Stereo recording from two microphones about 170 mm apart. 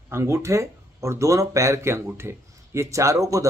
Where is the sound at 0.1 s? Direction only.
15° right (ahead or behind).